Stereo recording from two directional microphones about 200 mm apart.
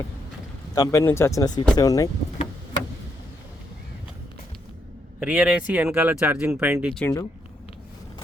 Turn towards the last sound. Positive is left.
turn(degrees=5)  # may be behind; listen again after turning